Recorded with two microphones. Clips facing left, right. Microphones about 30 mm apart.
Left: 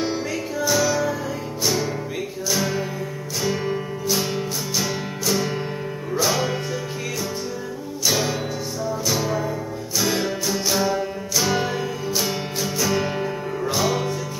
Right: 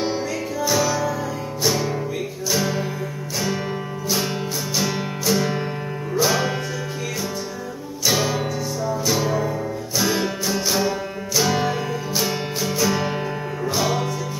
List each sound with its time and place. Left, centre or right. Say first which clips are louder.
0.6 s music: even; centre
8.1 s music: right 2 dB; centre